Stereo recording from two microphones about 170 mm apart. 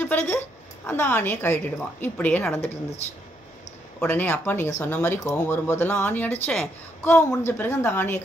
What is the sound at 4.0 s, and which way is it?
Speech, 10° left (ahead or behind).